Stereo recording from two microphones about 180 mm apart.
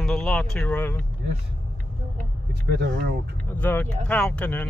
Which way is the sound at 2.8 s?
70° right (ahead or behind).